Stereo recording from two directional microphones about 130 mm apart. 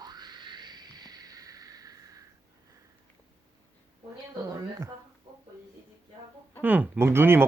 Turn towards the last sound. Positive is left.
turn(degrees=-20)  # may be behind; listen again after turning